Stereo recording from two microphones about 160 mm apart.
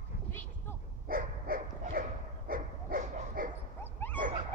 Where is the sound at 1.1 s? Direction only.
60° right (ahead or behind).